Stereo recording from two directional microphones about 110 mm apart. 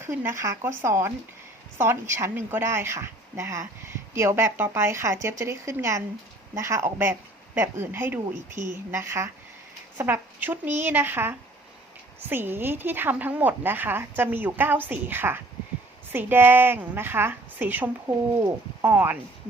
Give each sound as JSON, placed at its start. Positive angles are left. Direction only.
{"t": 0.0, "sound": "a woman's voice", "side_deg": -25}